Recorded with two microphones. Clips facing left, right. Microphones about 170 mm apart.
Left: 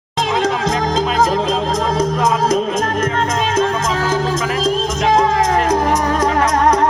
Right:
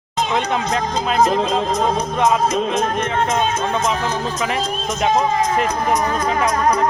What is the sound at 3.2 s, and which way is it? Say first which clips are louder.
Music: left 1 dB; 90° left.